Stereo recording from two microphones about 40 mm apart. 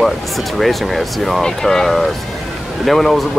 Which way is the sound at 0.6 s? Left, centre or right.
Centre.